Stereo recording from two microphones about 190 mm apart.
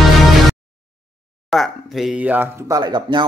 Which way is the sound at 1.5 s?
Centre (ahead or behind).